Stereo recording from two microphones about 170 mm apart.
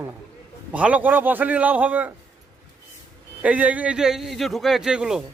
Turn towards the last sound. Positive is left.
turn(degrees=-5)  # may be behind; listen again after turning